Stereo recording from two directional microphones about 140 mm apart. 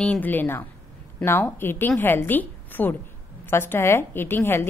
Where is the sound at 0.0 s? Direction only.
10° left (ahead or behind).